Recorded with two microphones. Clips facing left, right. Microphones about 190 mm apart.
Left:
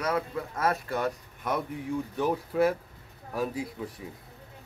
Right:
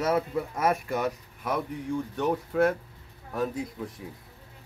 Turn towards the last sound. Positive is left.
turn(degrees=5)  # may be behind; listen again after turning